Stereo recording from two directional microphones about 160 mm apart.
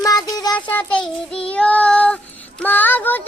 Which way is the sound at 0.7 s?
10° left (ahead or behind).